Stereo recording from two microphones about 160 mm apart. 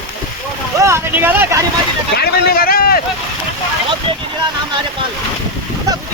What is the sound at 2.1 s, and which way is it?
Speech, 75° left (ahead or behind).